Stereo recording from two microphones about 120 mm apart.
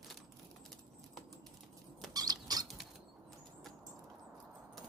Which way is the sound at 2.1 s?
30° right (ahead or behind).